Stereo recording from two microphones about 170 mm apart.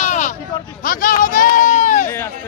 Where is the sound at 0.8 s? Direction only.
55° left (ahead or behind).